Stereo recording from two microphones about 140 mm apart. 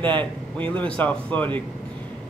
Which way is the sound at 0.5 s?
10° left (ahead or behind).